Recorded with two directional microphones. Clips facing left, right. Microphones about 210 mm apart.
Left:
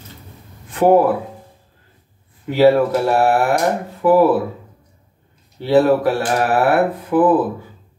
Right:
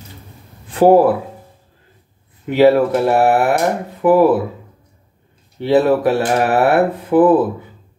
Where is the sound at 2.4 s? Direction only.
20° right (ahead or behind).